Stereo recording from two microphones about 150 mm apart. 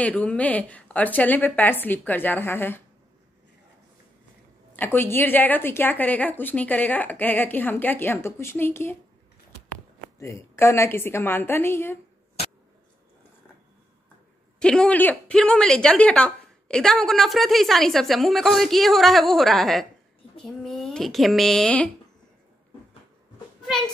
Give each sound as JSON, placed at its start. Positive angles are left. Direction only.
{"t": 0.0, "sound": "a woman's voice", "side_deg": 10}
{"t": 4.7, "sound": "a woman's voice", "side_deg": 15}
{"t": 10.1, "sound": "a woman's voice", "side_deg": 20}
{"t": 14.6, "sound": "a woman's voice", "side_deg": 5}